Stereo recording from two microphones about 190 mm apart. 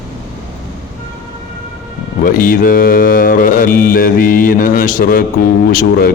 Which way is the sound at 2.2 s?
45° left (ahead or behind).